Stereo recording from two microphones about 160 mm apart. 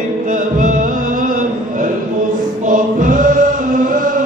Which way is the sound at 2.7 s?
55° right (ahead or behind).